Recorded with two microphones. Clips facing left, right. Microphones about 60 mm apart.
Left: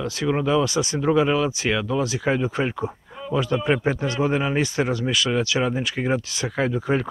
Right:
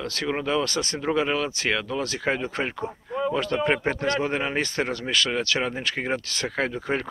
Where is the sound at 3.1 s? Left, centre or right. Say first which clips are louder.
Right 1 dB; right.